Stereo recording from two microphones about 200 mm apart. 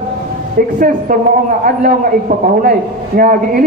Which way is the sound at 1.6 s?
40° right (ahead or behind).